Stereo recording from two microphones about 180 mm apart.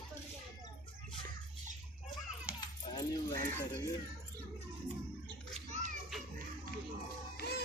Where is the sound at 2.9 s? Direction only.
20° left (ahead or behind).